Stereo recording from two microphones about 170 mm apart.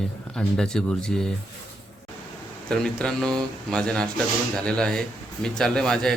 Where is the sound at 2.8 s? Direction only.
5° left (ahead or behind).